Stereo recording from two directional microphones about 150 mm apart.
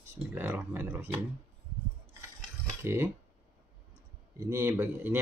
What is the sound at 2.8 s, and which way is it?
Speech, 15° right (ahead or behind).